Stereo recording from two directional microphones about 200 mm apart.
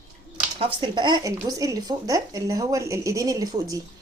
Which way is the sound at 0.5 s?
25° right (ahead or behind).